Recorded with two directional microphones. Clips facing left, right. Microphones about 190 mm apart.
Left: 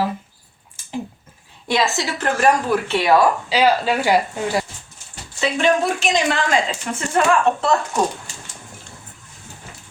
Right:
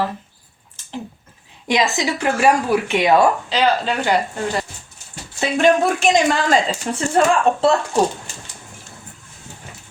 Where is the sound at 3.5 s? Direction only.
10° left (ahead or behind).